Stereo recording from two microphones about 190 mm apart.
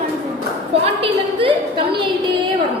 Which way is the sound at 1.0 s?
30° right (ahead or behind).